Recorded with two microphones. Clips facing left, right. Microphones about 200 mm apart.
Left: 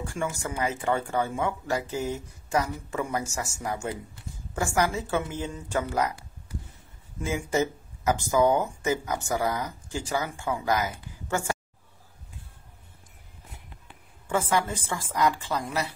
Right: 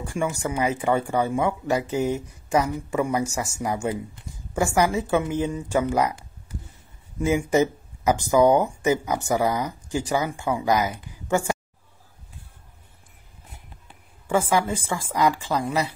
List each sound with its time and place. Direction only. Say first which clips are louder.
0.0 s speech: right 5 dB; 15° right (ahead or behind)
7.2 s speech: right 6 dB; 15° right (ahead or behind)
14.3 s speech: right 4 dB; 10° right (ahead or behind)